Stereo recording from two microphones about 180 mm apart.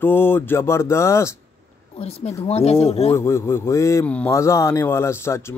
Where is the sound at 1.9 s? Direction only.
35° left (ahead or behind).